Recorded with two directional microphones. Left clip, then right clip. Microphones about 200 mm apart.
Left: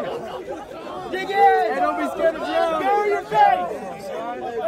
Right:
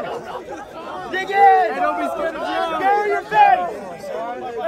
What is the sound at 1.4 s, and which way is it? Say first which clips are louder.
Speech: right 3 dB; 30° right (ahead or behind).